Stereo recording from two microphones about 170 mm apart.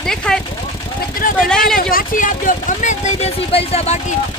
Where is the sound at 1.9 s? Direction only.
55° left (ahead or behind).